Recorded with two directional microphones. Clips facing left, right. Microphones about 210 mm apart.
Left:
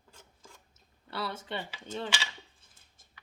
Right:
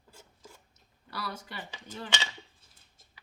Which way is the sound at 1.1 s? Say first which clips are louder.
Left 4 dB; 25° left (ahead or behind).